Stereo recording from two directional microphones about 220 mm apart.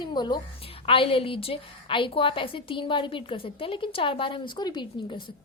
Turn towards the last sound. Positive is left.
turn(degrees=20)  # may be behind; listen again after turning